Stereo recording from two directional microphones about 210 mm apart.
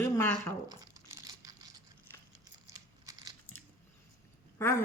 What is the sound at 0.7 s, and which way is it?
Crumpling, 15° right (ahead or behind).